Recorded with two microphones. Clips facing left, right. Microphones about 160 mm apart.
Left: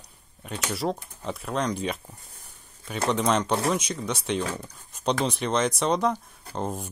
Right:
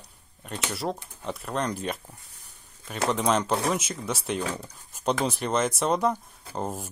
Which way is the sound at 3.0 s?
Centre (ahead or behind).